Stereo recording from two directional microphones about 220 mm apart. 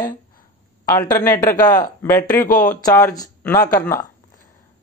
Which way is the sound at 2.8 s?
15° left (ahead or behind).